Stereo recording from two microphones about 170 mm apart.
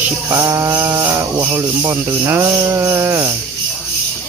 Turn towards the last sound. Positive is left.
turn(degrees=-20)  # may be behind; listen again after turning